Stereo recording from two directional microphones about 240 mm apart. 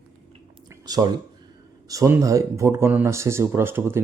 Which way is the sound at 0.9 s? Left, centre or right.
Centre.